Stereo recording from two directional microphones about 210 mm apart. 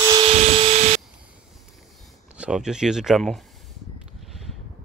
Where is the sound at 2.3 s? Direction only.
5° right (ahead or behind).